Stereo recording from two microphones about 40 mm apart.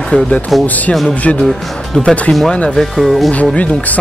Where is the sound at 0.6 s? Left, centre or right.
Left.